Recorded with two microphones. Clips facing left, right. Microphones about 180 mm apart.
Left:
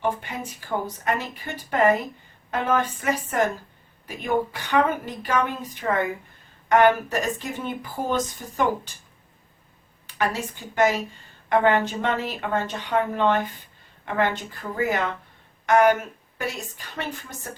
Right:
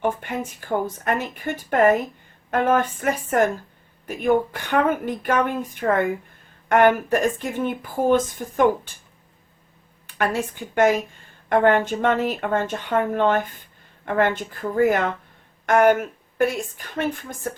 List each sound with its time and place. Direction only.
0.2 s speech: 50° right (ahead or behind)
10.8 s speech: 55° right (ahead or behind)